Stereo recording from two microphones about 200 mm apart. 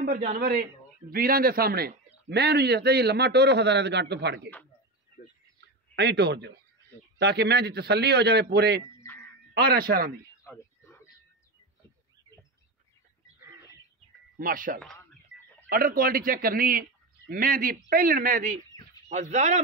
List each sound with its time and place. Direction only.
0.4 s a man's voice: 50° right (ahead or behind)
5.9 s a man's voice: 55° right (ahead or behind)
14.4 s speech: 45° right (ahead or behind)